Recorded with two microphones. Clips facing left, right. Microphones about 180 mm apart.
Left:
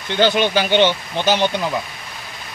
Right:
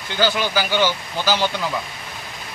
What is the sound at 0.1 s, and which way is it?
Speech, 25° left (ahead or behind).